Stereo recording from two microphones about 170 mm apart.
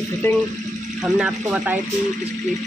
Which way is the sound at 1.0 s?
5° right (ahead or behind).